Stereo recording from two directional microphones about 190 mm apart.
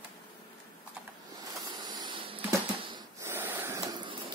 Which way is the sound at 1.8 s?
20° right (ahead or behind).